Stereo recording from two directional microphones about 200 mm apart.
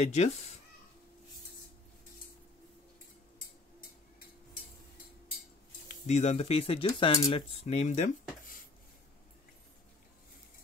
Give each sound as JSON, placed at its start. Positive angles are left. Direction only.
{"t": 0.0, "sound": "speech", "side_deg": 35}
{"t": 5.9, "sound": "speech", "side_deg": 35}